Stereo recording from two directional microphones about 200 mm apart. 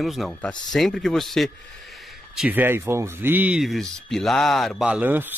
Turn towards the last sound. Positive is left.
turn(degrees=-10)  # may be behind; listen again after turning